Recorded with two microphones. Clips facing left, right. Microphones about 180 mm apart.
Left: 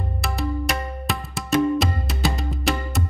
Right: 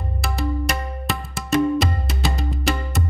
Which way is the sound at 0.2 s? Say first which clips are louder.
Right 1 dB; centre (ahead or behind).